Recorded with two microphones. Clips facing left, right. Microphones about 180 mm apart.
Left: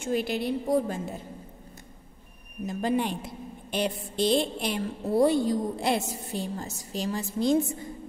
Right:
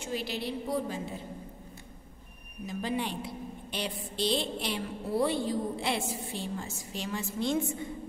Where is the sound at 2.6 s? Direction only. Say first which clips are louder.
Left 6 dB; 50° left (ahead or behind).